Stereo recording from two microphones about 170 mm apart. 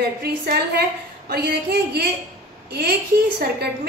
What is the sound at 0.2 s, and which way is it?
A woman's voice, 65° right (ahead or behind).